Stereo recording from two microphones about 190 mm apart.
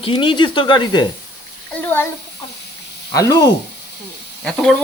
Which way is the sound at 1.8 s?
10° left (ahead or behind).